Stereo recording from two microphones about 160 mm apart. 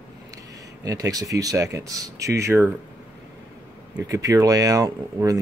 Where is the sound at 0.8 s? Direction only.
20° right (ahead or behind).